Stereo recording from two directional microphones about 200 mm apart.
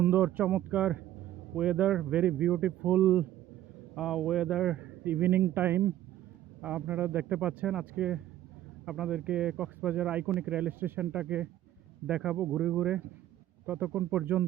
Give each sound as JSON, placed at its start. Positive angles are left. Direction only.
{"t": 0.0, "sound": "a man's voice", "side_deg": -5}